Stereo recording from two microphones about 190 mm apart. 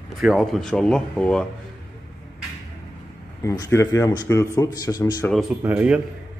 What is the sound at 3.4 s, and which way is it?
A man's voice, 15° left (ahead or behind).